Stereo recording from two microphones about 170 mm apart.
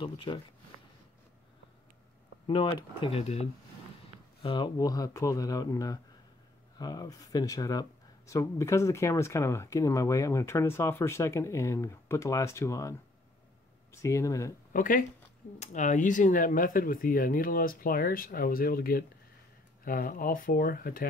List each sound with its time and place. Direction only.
0.0 s speech: 30° left (ahead or behind)
2.4 s speech: 30° left (ahead or behind)
13.9 s speech: 15° left (ahead or behind)
14.7 s speech: 55° left (ahead or behind)